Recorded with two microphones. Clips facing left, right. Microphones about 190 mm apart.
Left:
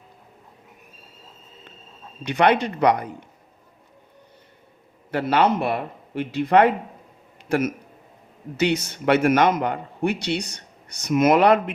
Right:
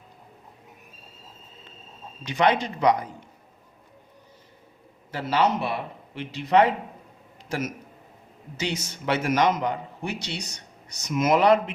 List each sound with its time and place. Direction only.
2.2 s a man's voice: 60° left (ahead or behind)
5.1 s a man's voice: 55° left (ahead or behind)